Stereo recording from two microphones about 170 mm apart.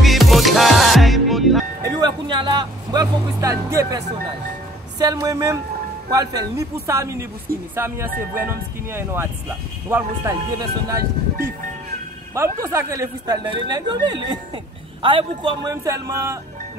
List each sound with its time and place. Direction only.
0.0 s music: centre (ahead or behind)
1.8 s speech: 25° right (ahead or behind)
12.4 s speech: 15° right (ahead or behind)